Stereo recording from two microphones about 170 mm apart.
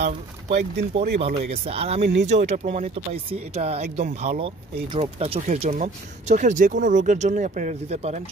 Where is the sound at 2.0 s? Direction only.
90° right.